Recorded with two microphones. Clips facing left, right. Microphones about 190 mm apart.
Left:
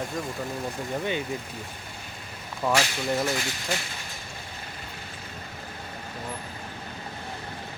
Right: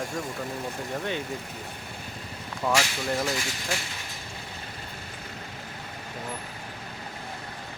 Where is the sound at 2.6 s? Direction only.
5° left (ahead or behind).